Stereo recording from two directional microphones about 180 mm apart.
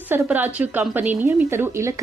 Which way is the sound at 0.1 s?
10° right (ahead or behind).